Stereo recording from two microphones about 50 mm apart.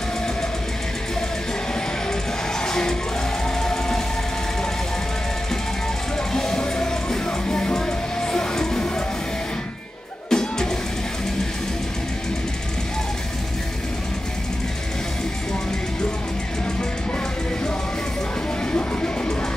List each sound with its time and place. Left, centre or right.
2.6 s music: centre
6.3 s music: centre
10.3 s music: centre
18.7 s music: left